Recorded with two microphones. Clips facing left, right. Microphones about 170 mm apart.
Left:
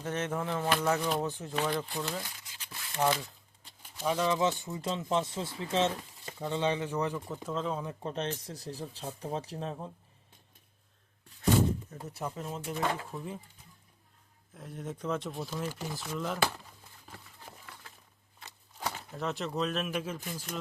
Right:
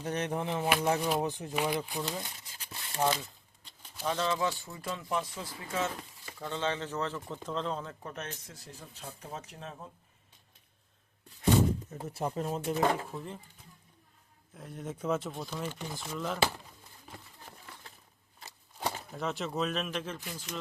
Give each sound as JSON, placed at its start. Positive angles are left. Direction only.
{"t": 0.0, "sound": "speech", "side_deg": -15}
{"t": 2.3, "sound": "a sound", "side_deg": -30}
{"t": 3.0, "sound": "speech", "side_deg": 0}
{"t": 4.0, "sound": "speech", "side_deg": 10}
{"t": 7.9, "sound": "speech", "side_deg": 25}
{"t": 11.9, "sound": "speech", "side_deg": -30}
{"t": 13.1, "sound": "speech", "side_deg": 0}
{"t": 14.5, "sound": "speech", "side_deg": 0}
{"t": 17.5, "sound": "crumpling", "side_deg": 5}
{"t": 18.8, "sound": "a sound", "side_deg": -30}
{"t": 19.1, "sound": "speech", "side_deg": 0}